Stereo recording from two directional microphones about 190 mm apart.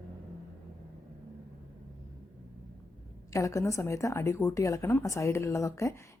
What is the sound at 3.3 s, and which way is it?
A woman's voice, 15° left (ahead or behind).